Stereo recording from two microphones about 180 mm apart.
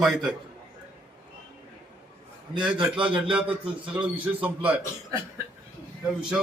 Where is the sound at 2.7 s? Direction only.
30° right (ahead or behind).